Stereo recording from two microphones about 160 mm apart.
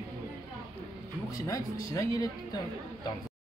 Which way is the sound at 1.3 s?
20° left (ahead or behind).